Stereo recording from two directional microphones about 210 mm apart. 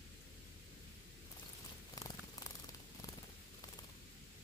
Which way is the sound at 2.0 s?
15° left (ahead or behind).